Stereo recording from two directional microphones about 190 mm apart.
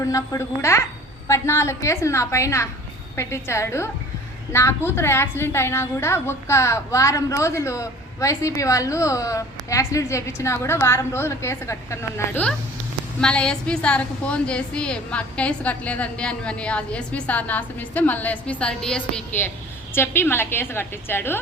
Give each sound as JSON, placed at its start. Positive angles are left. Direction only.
{"t": 0.0, "sound": "a woman's voice", "side_deg": 15}